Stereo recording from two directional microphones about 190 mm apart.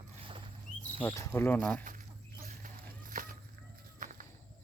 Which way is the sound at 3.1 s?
45° right (ahead or behind).